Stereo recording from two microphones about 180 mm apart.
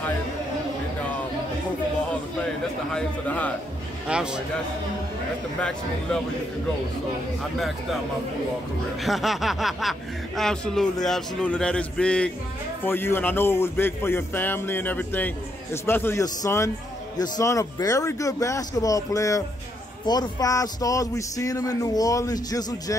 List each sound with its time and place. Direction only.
2.9 s speech: 5° left (ahead or behind)
4.1 s speech: 5° right (ahead or behind)
9.0 s speech: centre (ahead or behind); by 22.9 s 20° left (ahead or behind)